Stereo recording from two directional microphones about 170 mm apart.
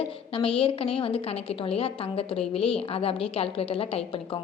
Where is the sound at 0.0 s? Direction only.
30° left (ahead or behind).